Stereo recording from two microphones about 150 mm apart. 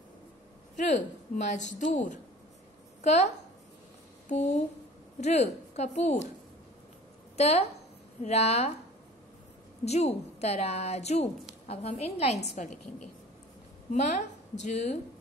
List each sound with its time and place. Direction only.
0.7 s a woman's voice: 55° left (ahead or behind)
7.3 s a woman's voice: 45° left (ahead or behind)
9.8 s speech: 45° left (ahead or behind)
12.6 s a woman's voice: 60° left (ahead or behind)
14.0 s a woman's voice: 50° left (ahead or behind)